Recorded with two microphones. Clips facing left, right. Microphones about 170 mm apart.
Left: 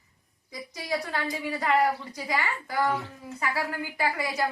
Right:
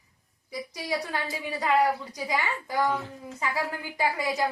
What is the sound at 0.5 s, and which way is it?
A woman's voice, 15° right (ahead or behind).